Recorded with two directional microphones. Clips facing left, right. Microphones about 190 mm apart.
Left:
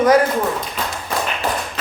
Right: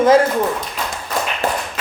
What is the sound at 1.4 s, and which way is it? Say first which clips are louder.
Tap: right 3 dB; 50° right (ahead or behind).